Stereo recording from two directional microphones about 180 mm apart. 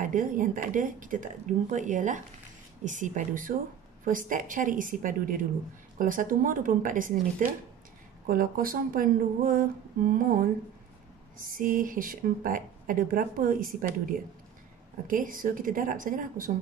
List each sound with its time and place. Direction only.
0.0 s speech: 45° right (ahead or behind)